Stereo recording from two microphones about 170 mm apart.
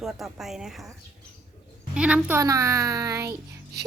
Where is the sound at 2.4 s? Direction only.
20° right (ahead or behind).